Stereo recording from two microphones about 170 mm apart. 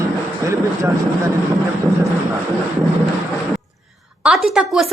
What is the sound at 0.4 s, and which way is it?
Speech, 15° right (ahead or behind).